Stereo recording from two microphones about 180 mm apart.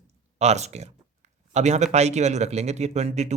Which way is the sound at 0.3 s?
35° right (ahead or behind).